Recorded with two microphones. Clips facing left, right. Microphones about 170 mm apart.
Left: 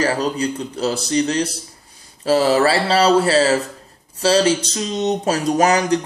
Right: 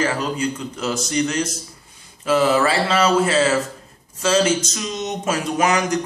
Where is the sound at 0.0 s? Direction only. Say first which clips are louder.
Left 2 dB; 35° left (ahead or behind).